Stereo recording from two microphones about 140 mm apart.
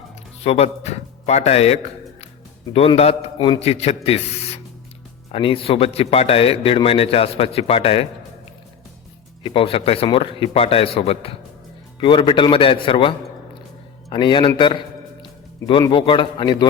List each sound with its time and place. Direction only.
0.4 s a man's voice: 50° left (ahead or behind)
9.4 s a man's voice: 40° left (ahead or behind)
15.9 s a man's voice: 35° left (ahead or behind)